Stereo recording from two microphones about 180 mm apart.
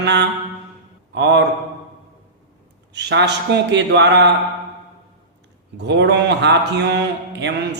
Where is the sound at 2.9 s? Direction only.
70° right (ahead or behind).